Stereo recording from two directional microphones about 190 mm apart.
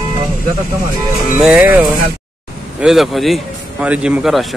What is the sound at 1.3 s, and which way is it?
A man's voice, 10° right (ahead or behind).